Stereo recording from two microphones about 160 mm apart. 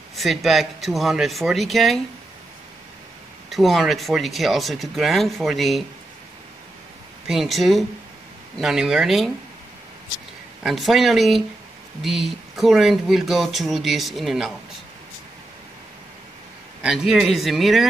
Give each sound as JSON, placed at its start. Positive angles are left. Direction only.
{"t": 0.1, "sound": "speech", "side_deg": 0}
{"t": 3.4, "sound": "speech", "side_deg": 0}
{"t": 7.2, "sound": "speech", "side_deg": 0}
{"t": 10.6, "sound": "speech", "side_deg": 0}
{"t": 16.8, "sound": "speech", "side_deg": -5}